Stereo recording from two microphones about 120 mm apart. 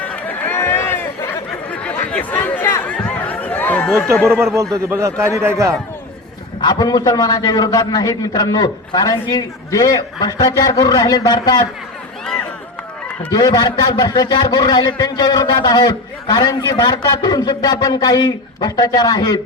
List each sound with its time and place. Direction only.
0.0 s chatter: 15° left (ahead or behind)
2.9 s a sound: 10° left (ahead or behind)
4.5 s a man's voice: 25° right (ahead or behind)
6.6 s a man's voice: 35° left (ahead or behind)
13.3 s a man's voice: 35° left (ahead or behind)